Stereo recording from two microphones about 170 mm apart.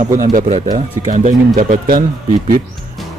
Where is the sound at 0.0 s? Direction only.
50° right (ahead or behind).